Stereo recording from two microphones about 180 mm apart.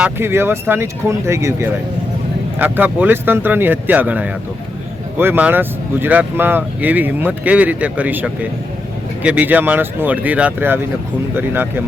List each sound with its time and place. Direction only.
0.0 s speech: 15° right (ahead or behind)